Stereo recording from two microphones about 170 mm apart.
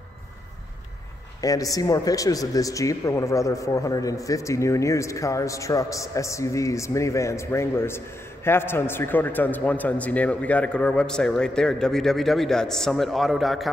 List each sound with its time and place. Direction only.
1.4 s a man's voice: 20° left (ahead or behind); by 13.7 s centre (ahead or behind)